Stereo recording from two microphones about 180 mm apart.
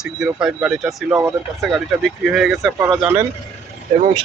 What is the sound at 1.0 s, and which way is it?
Speech, 15° right (ahead or behind).